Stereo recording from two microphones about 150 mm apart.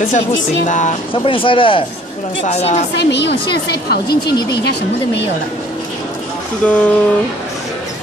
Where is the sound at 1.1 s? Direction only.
35° left (ahead or behind).